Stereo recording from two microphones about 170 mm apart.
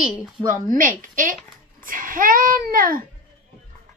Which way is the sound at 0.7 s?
50° right (ahead or behind).